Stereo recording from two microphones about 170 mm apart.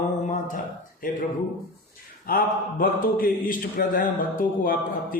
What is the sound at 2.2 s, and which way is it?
A man's voice, 60° left (ahead or behind).